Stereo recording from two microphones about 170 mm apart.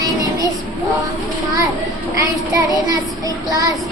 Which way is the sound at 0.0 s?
20° right (ahead or behind).